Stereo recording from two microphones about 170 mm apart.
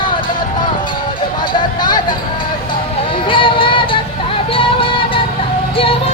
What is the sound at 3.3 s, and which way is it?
Music, 30° left (ahead or behind).